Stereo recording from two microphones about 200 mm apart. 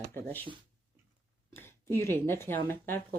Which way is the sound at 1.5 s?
10° left (ahead or behind).